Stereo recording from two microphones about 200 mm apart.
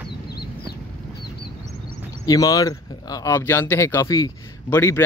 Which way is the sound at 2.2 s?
20° left (ahead or behind).